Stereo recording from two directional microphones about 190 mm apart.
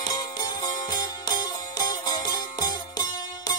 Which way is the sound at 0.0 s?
20° left (ahead or behind).